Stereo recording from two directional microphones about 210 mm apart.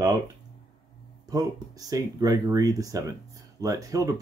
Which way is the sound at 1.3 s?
15° right (ahead or behind).